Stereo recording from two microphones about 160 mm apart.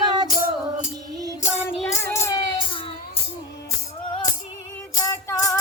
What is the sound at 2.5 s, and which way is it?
Child singing, 35° left (ahead or behind).